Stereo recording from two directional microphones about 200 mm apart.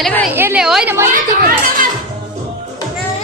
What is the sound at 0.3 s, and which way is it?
Speech, 10° right (ahead or behind).